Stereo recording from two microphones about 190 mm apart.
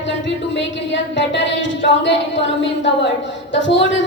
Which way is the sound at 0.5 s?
75° left (ahead or behind).